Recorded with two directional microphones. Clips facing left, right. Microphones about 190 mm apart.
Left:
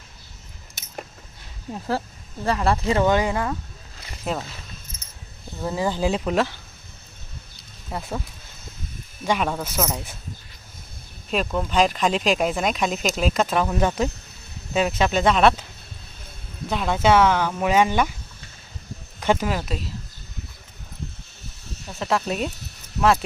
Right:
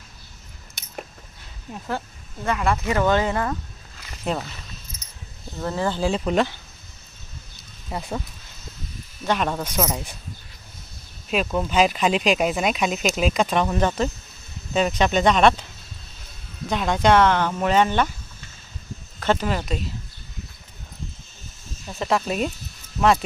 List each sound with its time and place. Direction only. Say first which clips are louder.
2.4 s speech: left 1 dB; 35° left (ahead or behind); by 3.5 s 15° left (ahead or behind)
4.2 s speech: right 1 dB; centre (ahead or behind)
5.5 s speech: even; 10° left (ahead or behind)
7.9 s speech: right 1 dB; centre (ahead or behind)
9.2 s speech: even; 10° left (ahead or behind)
11.3 s speech: right 1 dB; 5° right (ahead or behind)
16.6 s speech: right 1 dB; 5° left (ahead or behind)
19.2 s speech: even; 10° left (ahead or behind)
21.6 s snake: left 3 dB; 65° left (ahead or behind)
21.9 s speech: right 1 dB; centre (ahead or behind)